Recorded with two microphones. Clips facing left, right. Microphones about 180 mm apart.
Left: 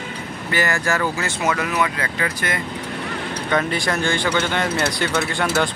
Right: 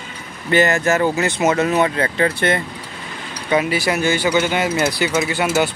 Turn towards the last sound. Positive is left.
turn(degrees=-15)  # may be behind; listen again after turning